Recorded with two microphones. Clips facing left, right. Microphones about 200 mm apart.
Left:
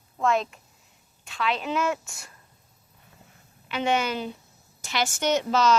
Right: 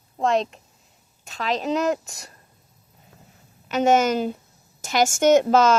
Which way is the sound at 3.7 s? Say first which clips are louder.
Right 7 dB; 45° right (ahead or behind).